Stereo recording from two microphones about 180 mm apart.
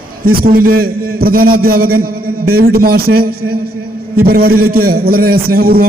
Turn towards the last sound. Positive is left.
turn(degrees=-55)  # may be behind; listen again after turning